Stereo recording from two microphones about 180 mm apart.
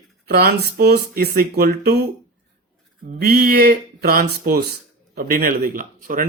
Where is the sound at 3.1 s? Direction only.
60° right (ahead or behind).